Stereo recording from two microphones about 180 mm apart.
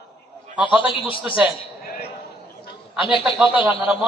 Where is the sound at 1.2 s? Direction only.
10° right (ahead or behind).